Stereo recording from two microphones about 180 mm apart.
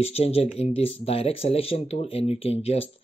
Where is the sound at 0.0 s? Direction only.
35° left (ahead or behind).